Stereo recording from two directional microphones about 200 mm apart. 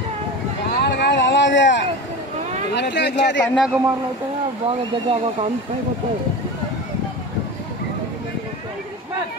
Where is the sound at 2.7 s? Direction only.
60° left (ahead or behind).